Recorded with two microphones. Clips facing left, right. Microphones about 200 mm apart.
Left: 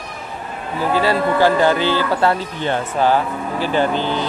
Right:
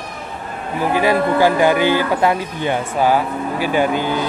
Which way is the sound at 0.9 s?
15° right (ahead or behind).